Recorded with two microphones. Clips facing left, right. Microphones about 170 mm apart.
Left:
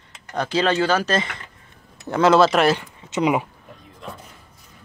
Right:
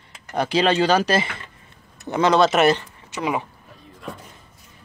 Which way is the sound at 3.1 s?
20° left (ahead or behind).